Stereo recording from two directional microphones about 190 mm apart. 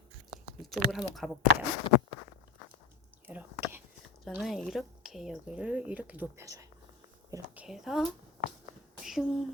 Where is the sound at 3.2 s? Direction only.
10° right (ahead or behind).